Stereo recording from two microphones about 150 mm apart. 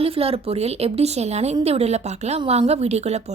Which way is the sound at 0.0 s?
40° right (ahead or behind).